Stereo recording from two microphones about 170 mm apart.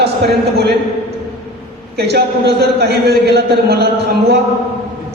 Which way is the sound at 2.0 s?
75° right (ahead or behind).